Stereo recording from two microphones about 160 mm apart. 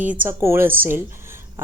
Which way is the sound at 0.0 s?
10° right (ahead or behind).